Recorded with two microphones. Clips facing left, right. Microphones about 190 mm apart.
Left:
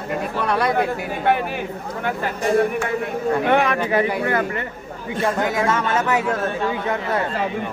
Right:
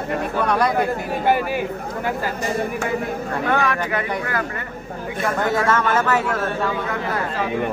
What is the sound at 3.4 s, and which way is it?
Speech, 20° left (ahead or behind).